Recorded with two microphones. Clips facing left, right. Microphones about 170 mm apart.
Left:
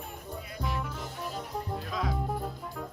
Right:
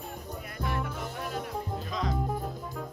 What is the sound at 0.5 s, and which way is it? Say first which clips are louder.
Music: right 2 dB; 55° right (ahead or behind).